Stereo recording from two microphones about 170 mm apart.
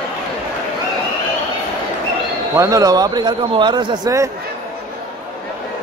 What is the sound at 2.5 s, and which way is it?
A man's voice, 20° right (ahead or behind).